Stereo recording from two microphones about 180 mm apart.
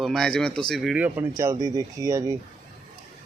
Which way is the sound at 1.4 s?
20° right (ahead or behind).